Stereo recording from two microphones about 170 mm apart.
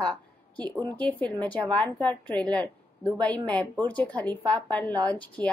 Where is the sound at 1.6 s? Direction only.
30° right (ahead or behind).